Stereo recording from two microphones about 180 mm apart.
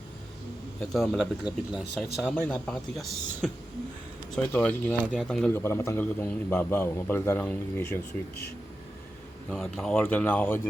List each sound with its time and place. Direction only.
0.9 s speech: centre (ahead or behind)
4.5 s a man's voice: 10° left (ahead or behind)
5.5 s a man's voice: 15° left (ahead or behind)
9.5 s a man's voice: centre (ahead or behind)